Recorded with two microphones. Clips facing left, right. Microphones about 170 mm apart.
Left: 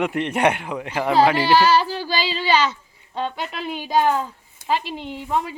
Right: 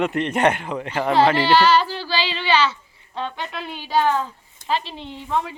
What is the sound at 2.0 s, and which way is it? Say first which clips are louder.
Child singing: left 1 dB; 40° left (ahead or behind).